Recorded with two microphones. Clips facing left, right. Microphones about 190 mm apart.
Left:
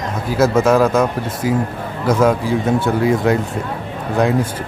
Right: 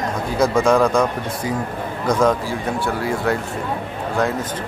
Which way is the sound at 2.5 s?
20° left (ahead or behind).